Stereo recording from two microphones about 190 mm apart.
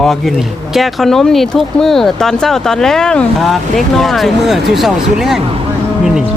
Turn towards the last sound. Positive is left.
turn(degrees=0)  # may be behind; listen again after turning